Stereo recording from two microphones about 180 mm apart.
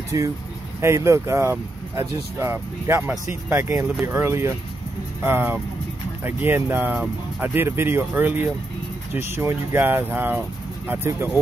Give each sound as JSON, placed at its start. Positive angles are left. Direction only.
{"t": 0.1, "sound": "speech", "side_deg": -20}